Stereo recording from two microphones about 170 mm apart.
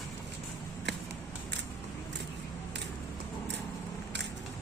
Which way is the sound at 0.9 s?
90° right.